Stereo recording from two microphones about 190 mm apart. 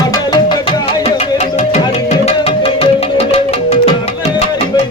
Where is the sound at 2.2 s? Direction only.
30° left (ahead or behind).